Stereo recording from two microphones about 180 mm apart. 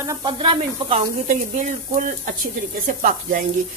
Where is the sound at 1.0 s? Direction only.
50° right (ahead or behind).